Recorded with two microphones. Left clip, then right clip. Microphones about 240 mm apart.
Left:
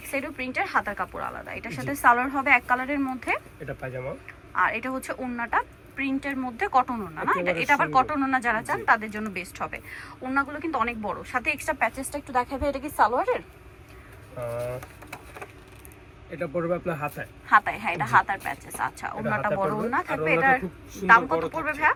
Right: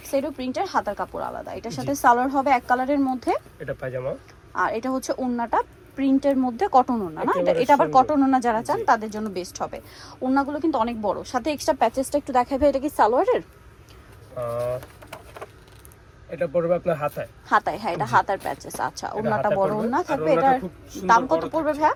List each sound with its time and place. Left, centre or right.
0.1 s a woman's voice: centre; by 13.4 s right
14.5 s a man's voice: centre
16.4 s a man's voice: centre
16.8 s a woman's voice: centre
17.5 s a woman's voice: right